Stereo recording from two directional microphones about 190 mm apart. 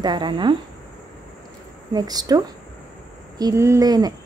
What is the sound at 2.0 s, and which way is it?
A woman's voice, 20° right (ahead or behind).